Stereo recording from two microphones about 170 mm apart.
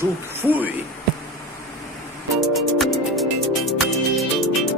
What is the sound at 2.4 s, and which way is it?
Music, centre (ahead or behind).